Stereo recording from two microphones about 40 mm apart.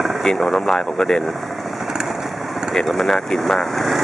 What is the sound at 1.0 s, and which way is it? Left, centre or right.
Speech, centre.